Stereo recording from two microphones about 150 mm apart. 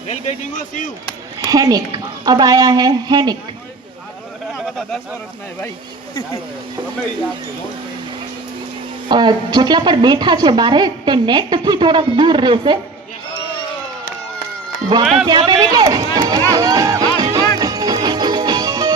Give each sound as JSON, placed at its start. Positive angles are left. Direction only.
{"t": 1.5, "sound": "a woman's voice", "side_deg": -25}
{"t": 9.0, "sound": "a woman's voice", "side_deg": -30}
{"t": 14.9, "sound": "a woman's voice", "side_deg": -30}
{"t": 16.1, "sound": "music", "side_deg": -25}